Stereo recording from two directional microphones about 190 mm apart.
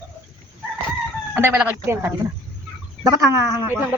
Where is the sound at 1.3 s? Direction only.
10° right (ahead or behind).